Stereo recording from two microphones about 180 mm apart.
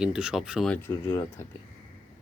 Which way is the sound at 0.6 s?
10° left (ahead or behind).